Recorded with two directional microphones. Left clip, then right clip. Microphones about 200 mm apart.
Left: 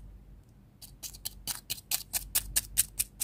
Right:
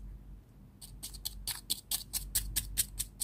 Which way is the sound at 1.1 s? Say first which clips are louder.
Even; 15° left (ahead or behind).